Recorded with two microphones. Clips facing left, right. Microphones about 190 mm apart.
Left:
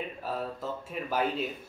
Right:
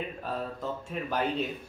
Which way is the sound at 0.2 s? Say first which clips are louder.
Even; 5° left (ahead or behind).